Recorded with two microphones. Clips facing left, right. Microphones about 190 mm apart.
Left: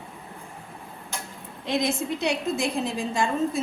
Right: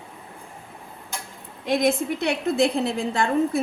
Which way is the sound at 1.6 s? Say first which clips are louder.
Right 4 dB; 55° right (ahead or behind).